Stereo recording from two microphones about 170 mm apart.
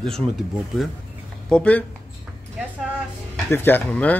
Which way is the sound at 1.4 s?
5° left (ahead or behind).